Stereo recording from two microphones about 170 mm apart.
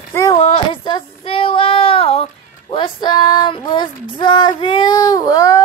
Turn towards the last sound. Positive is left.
turn(degrees=20)  # may be behind; listen again after turning